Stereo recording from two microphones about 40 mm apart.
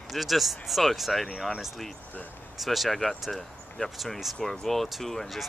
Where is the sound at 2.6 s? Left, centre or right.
Centre.